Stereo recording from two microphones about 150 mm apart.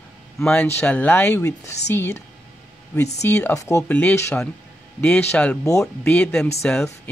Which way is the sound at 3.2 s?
20° left (ahead or behind).